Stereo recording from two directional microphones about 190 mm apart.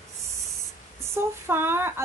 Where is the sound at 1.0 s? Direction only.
15° right (ahead or behind).